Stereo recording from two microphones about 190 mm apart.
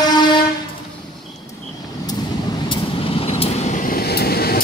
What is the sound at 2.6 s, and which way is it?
Vehicle, 30° left (ahead or behind).